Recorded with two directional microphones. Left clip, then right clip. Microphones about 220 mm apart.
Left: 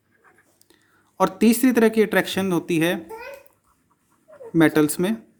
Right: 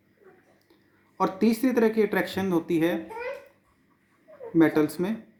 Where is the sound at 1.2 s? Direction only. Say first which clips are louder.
Left 5 dB; 40° left (ahead or behind).